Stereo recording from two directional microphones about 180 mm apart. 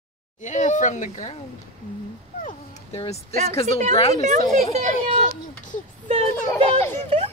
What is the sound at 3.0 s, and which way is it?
Speech, 35° left (ahead or behind).